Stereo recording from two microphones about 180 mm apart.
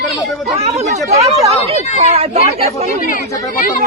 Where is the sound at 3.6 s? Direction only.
50° left (ahead or behind).